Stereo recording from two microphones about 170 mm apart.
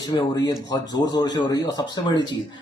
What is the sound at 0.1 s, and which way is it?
Speech, 25° left (ahead or behind).